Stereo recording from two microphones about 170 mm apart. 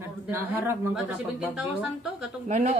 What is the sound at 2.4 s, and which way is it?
Speech, 40° right (ahead or behind).